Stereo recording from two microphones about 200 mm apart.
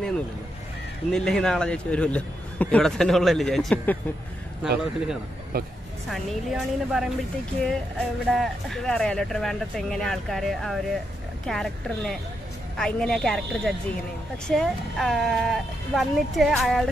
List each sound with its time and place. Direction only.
1.1 s a man's voice: 5° left (ahead or behind)
4.6 s a man's voice: 5° right (ahead or behind)
5.5 s speech: 50° right (ahead or behind)
6.0 s a man's voice: centre (ahead or behind)